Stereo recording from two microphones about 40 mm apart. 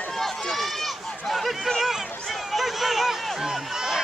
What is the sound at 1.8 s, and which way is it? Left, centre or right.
Speech, centre.